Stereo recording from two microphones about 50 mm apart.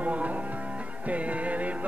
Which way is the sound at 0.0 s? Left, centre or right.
Right.